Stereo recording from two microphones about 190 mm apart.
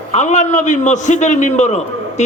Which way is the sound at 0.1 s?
40° left (ahead or behind).